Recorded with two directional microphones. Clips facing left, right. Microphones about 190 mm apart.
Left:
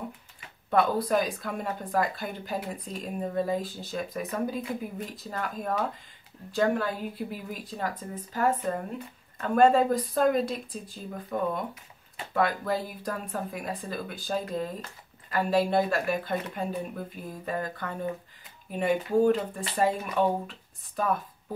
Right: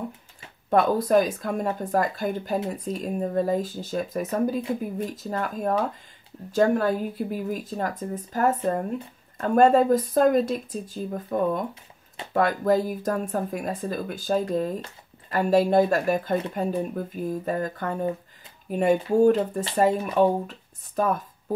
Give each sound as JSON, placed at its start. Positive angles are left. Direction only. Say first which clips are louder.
{"t": 0.7, "sound": "speech", "louder": "right 4 dB", "side_deg": -45}